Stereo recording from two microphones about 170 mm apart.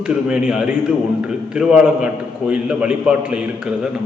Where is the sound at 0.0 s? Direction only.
5° right (ahead or behind).